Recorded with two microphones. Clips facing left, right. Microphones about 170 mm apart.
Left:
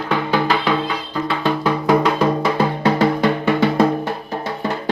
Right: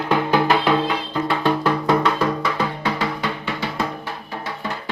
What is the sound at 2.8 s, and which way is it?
Music, 45° left (ahead or behind).